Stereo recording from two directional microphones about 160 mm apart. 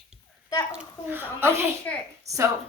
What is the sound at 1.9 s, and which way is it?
Speech, 10° left (ahead or behind).